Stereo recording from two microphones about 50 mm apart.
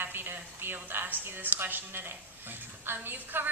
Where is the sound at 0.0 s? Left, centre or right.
Right.